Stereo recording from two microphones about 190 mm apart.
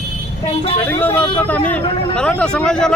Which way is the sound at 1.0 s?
10° left (ahead or behind).